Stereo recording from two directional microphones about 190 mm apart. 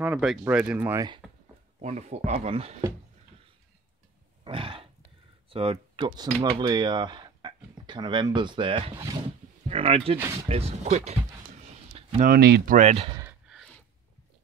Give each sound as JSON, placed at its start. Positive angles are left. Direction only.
{"t": 0.0, "sound": "speech", "side_deg": -5}
{"t": 1.2, "sound": "a sound", "side_deg": 0}
{"t": 1.8, "sound": "speech", "side_deg": -35}
{"t": 4.5, "sound": "wild animals", "side_deg": -30}
{"t": 5.5, "sound": "speech", "side_deg": -30}
{"t": 12.2, "sound": "speech", "side_deg": -55}
{"t": 12.7, "sound": "speech", "side_deg": -35}
{"t": 13.5, "sound": "gasp", "side_deg": 5}